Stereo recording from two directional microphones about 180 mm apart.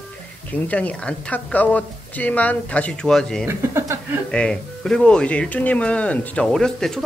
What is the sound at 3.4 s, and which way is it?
Speech, 15° right (ahead or behind).